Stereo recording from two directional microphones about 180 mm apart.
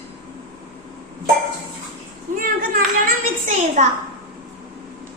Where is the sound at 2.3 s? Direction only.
50° right (ahead or behind).